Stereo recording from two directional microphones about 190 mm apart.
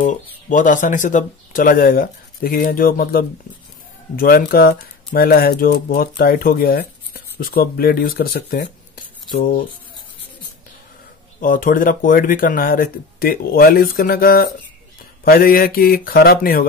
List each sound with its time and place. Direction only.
0.0 s speech: 45° left (ahead or behind)
11.3 s speech: 45° left (ahead or behind)